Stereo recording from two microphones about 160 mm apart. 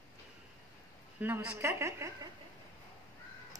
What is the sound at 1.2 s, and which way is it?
Speech, 10° right (ahead or behind).